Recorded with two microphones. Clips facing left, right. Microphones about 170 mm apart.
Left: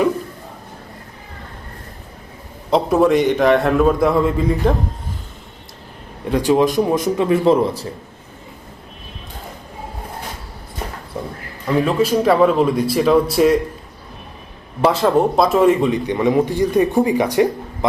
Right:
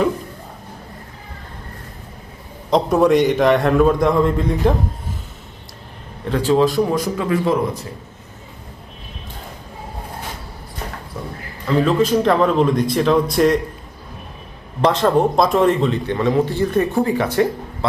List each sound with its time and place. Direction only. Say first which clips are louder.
2.6 s a man's voice: even; 5° left (ahead or behind)
6.2 s a man's voice: left 1 dB; 15° left (ahead or behind)
11.7 s a man's voice: even; 10° left (ahead or behind)
14.8 s a man's voice: left 1 dB; 5° left (ahead or behind)